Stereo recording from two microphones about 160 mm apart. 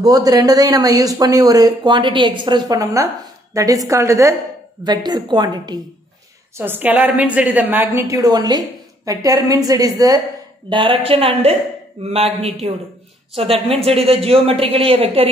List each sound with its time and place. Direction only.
0.0 s a woman's voice: 25° right (ahead or behind)
6.6 s a woman's voice: 10° right (ahead or behind); by 15.2 s 35° right (ahead or behind)